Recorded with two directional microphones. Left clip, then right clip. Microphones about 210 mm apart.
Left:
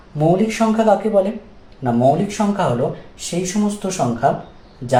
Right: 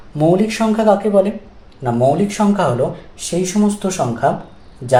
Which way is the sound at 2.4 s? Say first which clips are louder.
Right 3 dB; 45° right (ahead or behind).